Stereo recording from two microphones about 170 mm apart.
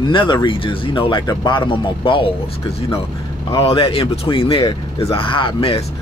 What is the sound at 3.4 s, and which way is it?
Speech, 30° left (ahead or behind).